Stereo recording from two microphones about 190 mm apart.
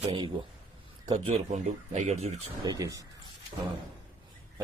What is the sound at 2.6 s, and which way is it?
Speech, 20° right (ahead or behind).